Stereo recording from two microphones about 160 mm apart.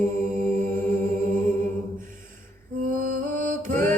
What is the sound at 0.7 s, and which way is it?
Music, 15° left (ahead or behind).